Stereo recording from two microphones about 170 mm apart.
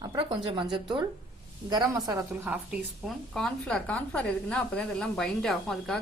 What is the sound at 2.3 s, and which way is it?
A woman's voice, 5° right (ahead or behind).